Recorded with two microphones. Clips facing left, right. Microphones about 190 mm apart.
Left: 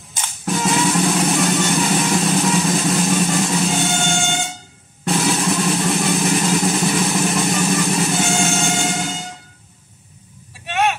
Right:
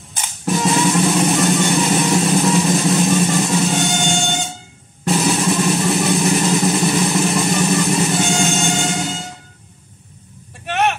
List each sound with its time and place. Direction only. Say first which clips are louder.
0.5 s vehicle: right 2 dB; centre (ahead or behind)
10.6 s vehicle: right 1 dB; 65° right (ahead or behind)